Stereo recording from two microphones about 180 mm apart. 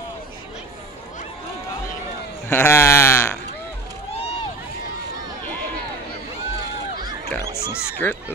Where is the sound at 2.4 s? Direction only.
15° left (ahead or behind).